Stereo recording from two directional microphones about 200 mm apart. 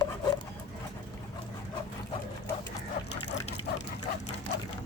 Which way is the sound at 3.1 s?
55° left (ahead or behind).